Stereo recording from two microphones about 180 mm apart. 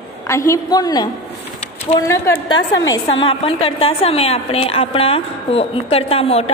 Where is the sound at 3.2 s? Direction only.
30° left (ahead or behind).